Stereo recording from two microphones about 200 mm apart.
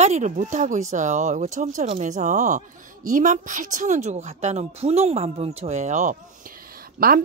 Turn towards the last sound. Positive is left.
turn(degrees=-45)  # may be behind; listen again after turning